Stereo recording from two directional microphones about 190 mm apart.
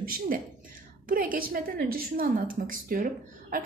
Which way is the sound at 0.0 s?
50° right (ahead or behind).